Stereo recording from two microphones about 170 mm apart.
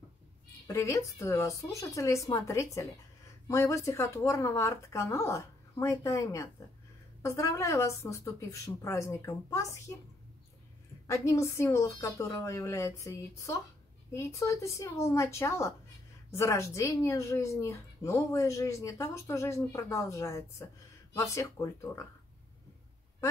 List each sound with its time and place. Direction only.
0.7 s speech: 15° left (ahead or behind)
11.1 s speech: 15° left (ahead or behind)